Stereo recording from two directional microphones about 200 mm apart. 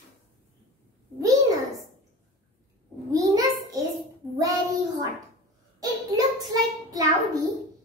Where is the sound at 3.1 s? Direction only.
15° right (ahead or behind).